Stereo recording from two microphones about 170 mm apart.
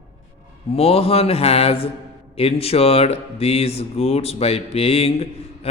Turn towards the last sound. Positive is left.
turn(degrees=35)  # may be behind; listen again after turning